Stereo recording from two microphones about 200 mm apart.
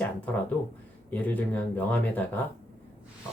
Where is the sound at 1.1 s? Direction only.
10° left (ahead or behind).